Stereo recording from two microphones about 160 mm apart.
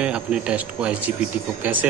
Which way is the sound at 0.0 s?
5° right (ahead or behind).